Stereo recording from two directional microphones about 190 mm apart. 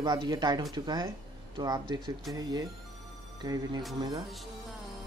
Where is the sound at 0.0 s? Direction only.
20° right (ahead or behind).